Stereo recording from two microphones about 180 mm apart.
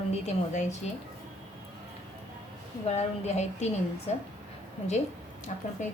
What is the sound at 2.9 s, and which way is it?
A woman's voice, 35° left (ahead or behind).